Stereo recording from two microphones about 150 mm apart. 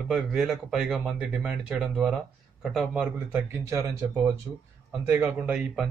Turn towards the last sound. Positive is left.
turn(degrees=-5)  # may be behind; listen again after turning